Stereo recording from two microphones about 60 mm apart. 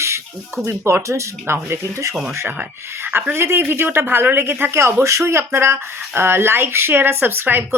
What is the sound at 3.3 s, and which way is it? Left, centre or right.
Speech, right.